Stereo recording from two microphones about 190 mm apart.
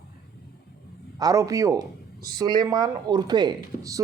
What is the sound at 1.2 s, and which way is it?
Speech, 20° right (ahead or behind).